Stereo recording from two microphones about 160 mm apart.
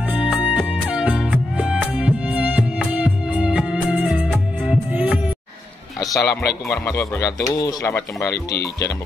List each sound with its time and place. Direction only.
0.1 s music: 10° right (ahead or behind)
5.9 s a sound: 20° left (ahead or behind)
6.7 s speech: 20° left (ahead or behind)